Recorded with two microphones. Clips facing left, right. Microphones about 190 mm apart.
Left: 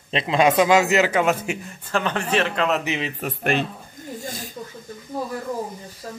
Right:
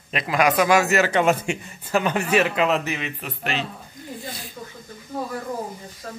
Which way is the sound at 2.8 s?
20° left (ahead or behind).